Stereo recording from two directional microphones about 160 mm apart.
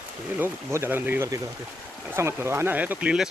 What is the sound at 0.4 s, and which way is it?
Speech, 15° right (ahead or behind).